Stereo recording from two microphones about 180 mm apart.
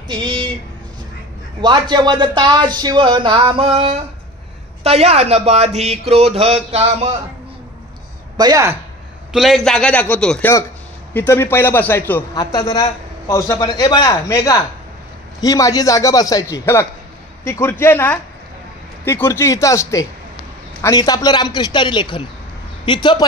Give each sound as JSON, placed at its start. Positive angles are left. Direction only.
{"t": 0.1, "sound": "a sound", "side_deg": -25}
{"t": 1.6, "sound": "speech", "side_deg": -25}
{"t": 8.4, "sound": "speech", "side_deg": -20}
{"t": 9.3, "sound": "a man's voice", "side_deg": 0}